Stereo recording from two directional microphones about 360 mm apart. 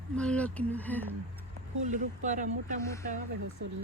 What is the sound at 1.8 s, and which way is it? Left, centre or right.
Speech, centre.